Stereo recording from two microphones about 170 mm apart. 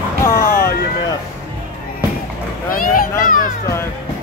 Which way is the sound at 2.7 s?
55° left (ahead or behind).